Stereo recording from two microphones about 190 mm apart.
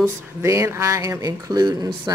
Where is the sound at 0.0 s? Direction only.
15° right (ahead or behind).